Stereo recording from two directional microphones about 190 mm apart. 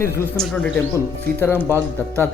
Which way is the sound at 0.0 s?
15° left (ahead or behind).